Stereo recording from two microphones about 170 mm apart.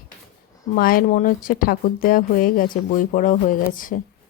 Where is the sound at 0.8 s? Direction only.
60° left (ahead or behind).